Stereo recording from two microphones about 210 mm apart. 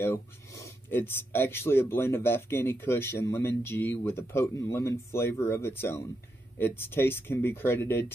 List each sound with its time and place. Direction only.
0.0 s speech: 10° left (ahead or behind)